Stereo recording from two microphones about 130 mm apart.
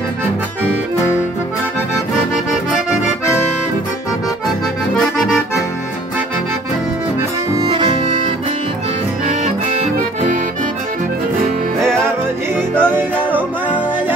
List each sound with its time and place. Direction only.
4.9 s accordion: 5° left (ahead or behind)
9.3 s accordion: 70° right (ahead or behind)
12.8 s music: 15° right (ahead or behind)